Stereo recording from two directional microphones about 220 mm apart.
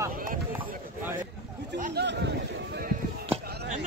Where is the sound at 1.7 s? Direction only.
40° right (ahead or behind).